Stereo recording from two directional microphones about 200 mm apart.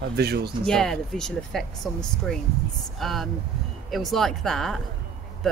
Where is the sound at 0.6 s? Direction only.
5° left (ahead or behind).